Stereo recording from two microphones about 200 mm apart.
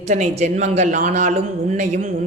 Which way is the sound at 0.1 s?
35° right (ahead or behind).